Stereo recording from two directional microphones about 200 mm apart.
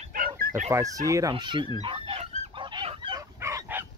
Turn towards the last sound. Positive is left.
turn(degrees=-15)  # may be behind; listen again after turning